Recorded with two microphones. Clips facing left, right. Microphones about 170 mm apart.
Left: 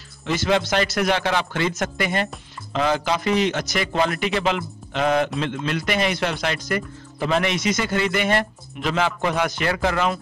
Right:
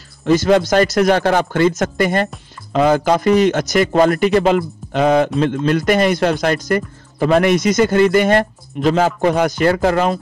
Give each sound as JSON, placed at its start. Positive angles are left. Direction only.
{"t": 0.2, "sound": "speech", "side_deg": -40}